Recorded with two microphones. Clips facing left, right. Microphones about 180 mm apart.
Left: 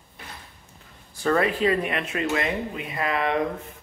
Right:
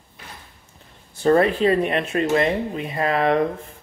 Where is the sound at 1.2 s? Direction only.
30° right (ahead or behind).